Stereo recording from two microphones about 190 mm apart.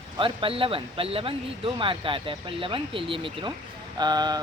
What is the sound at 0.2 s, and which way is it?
Speech, 25° right (ahead or behind).